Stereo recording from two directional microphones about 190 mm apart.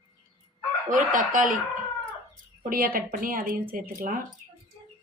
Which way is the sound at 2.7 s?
50° right (ahead or behind).